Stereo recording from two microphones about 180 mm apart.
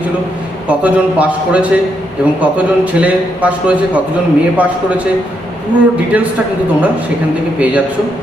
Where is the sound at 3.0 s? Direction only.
5° right (ahead or behind).